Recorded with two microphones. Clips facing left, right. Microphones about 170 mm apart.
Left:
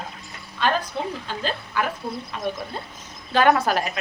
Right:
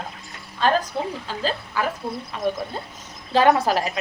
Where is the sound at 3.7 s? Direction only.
25° right (ahead or behind).